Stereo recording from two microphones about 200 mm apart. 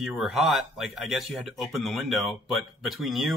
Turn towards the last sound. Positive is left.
turn(degrees=0)  # may be behind; listen again after turning